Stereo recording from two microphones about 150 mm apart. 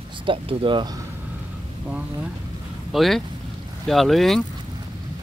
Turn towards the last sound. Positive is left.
turn(degrees=0)  # may be behind; listen again after turning